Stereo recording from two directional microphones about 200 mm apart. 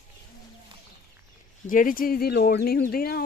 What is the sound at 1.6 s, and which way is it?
Speech, 45° left (ahead or behind).